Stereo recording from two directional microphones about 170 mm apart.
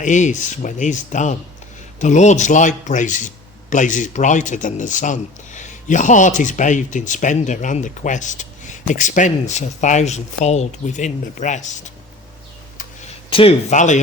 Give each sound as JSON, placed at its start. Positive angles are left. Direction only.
{"t": 0.0, "sound": "a man's voice", "side_deg": 45}
{"t": 13.3, "sound": "a man's voice", "side_deg": 35}